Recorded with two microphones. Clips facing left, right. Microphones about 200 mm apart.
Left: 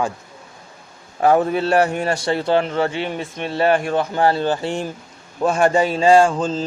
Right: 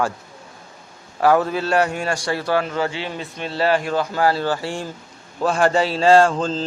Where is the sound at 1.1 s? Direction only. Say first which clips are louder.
Left 1 dB; 25° left (ahead or behind).